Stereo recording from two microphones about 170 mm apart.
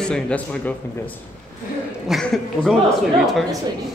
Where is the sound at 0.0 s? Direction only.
5° left (ahead or behind).